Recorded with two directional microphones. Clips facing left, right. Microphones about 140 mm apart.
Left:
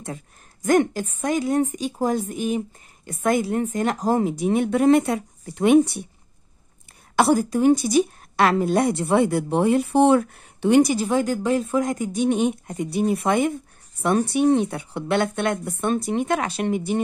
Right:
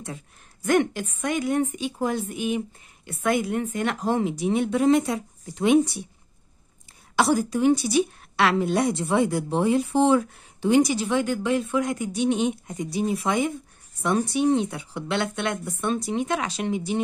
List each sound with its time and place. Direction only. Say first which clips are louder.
0.0 s a woman's voice: left 3 dB; 45° left (ahead or behind)
7.2 s a woman's voice: left 3 dB; 50° left (ahead or behind)